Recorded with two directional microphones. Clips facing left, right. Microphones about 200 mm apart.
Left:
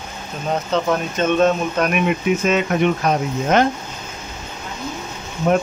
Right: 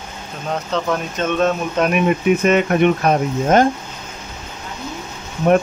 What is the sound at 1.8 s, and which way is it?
Speech, 30° right (ahead or behind).